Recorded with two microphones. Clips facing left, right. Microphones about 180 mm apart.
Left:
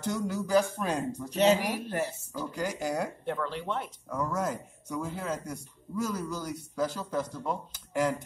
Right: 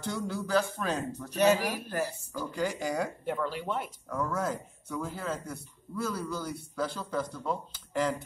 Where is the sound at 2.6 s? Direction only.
10° left (ahead or behind).